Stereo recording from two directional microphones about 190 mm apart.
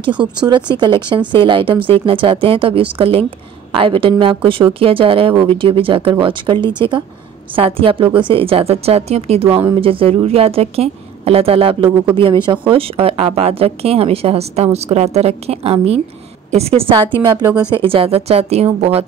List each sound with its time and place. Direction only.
0.0 s a woman's voice: 25° right (ahead or behind)
17.4 s speech: 5° right (ahead or behind)
17.8 s a woman's voice: 30° right (ahead or behind)